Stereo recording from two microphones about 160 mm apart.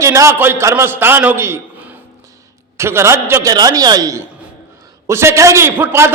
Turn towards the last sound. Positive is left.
turn(degrees=-15)  # may be behind; listen again after turning